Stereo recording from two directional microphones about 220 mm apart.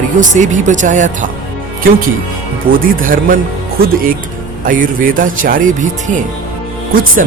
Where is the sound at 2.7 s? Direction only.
40° right (ahead or behind).